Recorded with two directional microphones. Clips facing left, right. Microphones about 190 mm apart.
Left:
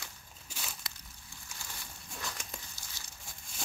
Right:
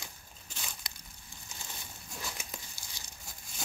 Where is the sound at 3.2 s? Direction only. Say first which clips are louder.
Right 1 dB; centre (ahead or behind).